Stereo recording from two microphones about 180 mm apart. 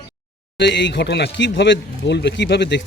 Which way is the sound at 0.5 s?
75° left (ahead or behind).